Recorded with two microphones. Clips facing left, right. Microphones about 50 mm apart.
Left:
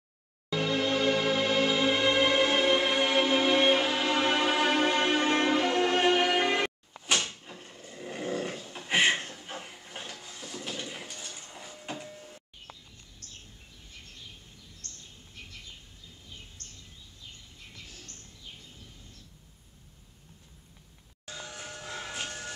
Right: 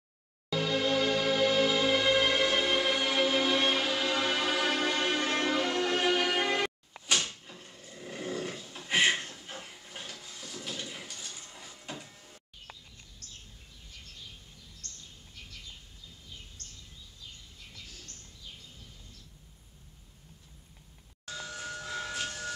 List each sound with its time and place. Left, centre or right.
0.5 s music: left
7.4 s dog: centre
12.0 s sliding door: centre
17.7 s a sound: left
21.3 s train: centre